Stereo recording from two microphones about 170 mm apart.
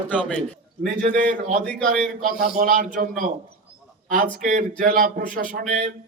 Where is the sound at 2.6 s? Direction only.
50° right (ahead or behind).